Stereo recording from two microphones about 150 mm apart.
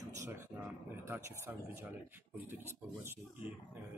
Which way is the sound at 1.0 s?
15° right (ahead or behind).